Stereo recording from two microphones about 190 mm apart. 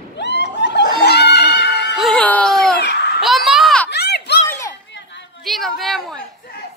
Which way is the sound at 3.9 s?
60° left (ahead or behind).